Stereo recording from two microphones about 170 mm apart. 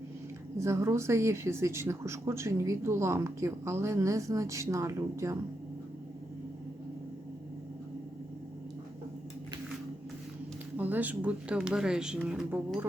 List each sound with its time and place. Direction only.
0.6 s speech: 15° right (ahead or behind)
10.8 s speech: 10° right (ahead or behind)